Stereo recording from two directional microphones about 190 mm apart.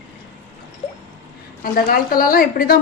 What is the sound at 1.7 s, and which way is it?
A woman's voice, 50° left (ahead or behind).